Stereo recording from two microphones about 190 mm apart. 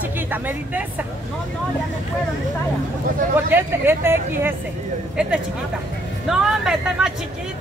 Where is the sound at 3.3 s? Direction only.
10° right (ahead or behind).